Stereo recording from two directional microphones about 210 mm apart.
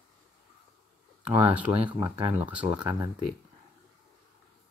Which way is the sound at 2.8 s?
20° right (ahead or behind).